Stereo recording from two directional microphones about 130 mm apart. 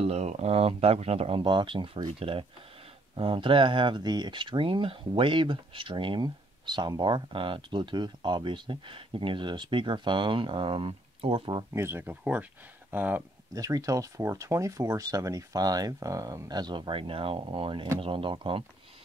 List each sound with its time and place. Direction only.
0.0 s speech: 55° right (ahead or behind)
11.7 s speech: 20° right (ahead or behind)
13.6 s speech: 25° right (ahead or behind)